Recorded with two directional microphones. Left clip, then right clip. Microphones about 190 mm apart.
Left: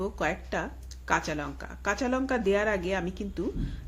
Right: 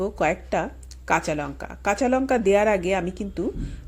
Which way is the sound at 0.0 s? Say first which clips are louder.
Right 7 dB; 25° right (ahead or behind).